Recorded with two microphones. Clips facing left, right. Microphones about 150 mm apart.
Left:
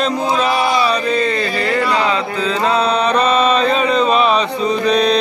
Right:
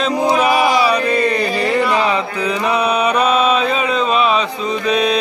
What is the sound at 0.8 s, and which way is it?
Music, 10° right (ahead or behind).